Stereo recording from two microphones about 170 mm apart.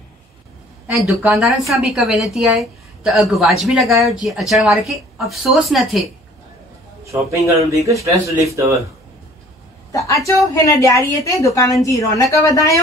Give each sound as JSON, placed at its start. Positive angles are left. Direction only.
{"t": 0.8, "sound": "a woman's voice", "side_deg": -5}
{"t": 7.1, "sound": "speech", "side_deg": -15}
{"t": 9.9, "sound": "a woman's voice", "side_deg": 20}